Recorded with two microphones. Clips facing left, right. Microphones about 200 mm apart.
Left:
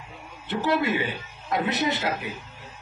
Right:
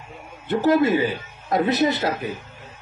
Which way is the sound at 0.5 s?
45° right (ahead or behind).